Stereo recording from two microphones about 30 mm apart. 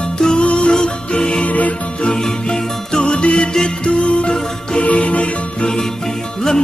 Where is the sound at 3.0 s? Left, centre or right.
Left.